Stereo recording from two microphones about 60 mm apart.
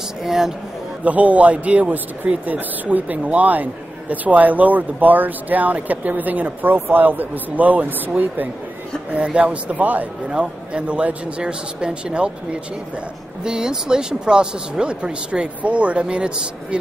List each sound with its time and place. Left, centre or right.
0.2 s speech: centre
1.0 s speech: right
13.4 s speech: centre